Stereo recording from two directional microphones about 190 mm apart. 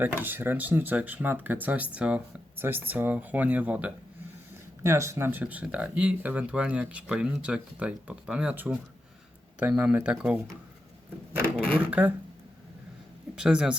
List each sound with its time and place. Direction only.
0.0 s speech: 10° right (ahead or behind)
11.8 s speech: 10° right (ahead or behind)
13.3 s speech: 5° right (ahead or behind)